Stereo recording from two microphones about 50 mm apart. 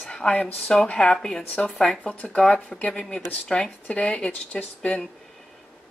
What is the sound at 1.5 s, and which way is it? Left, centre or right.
Speech, left.